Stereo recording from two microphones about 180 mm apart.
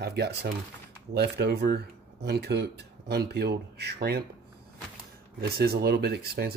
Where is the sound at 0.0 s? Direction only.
65° right (ahead or behind).